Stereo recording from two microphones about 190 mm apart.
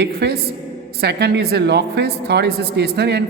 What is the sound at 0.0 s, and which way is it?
A woman's voice, 60° right (ahead or behind).